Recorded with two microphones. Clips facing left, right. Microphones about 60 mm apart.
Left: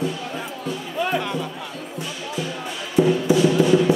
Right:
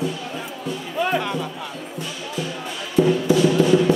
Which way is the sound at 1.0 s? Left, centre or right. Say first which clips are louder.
Right 2 dB; right.